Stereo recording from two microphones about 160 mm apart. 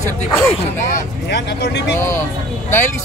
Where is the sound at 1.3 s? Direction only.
90° left.